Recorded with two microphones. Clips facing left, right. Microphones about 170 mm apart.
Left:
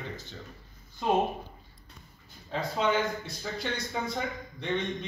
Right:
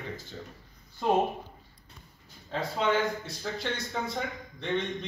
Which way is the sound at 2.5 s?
Centre (ahead or behind).